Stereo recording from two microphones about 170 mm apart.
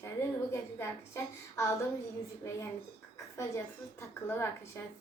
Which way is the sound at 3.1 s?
15° left (ahead or behind).